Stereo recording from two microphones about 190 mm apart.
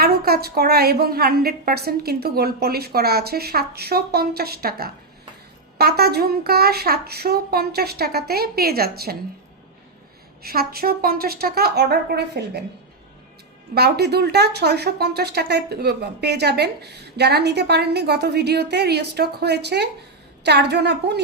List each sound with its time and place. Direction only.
0.0 s speech: 55° right (ahead or behind)
10.4 s a woman's voice: 55° right (ahead or behind)
13.7 s speech: 55° right (ahead or behind)